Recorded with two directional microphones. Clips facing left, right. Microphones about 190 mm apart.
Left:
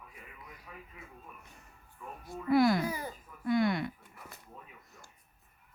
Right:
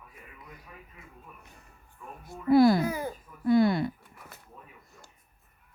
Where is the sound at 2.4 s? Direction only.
35° right (ahead or behind).